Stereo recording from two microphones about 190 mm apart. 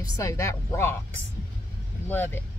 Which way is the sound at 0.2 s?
15° left (ahead or behind).